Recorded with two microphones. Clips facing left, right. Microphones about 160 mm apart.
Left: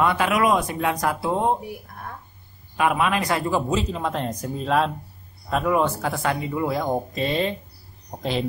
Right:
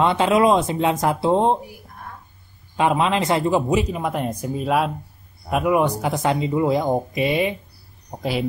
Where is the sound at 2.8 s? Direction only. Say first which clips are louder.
Right 2 dB; 25° right (ahead or behind).